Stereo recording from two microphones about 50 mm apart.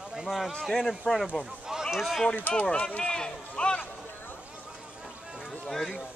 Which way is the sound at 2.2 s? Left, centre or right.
Left.